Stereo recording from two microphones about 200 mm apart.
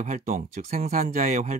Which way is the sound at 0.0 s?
40° right (ahead or behind).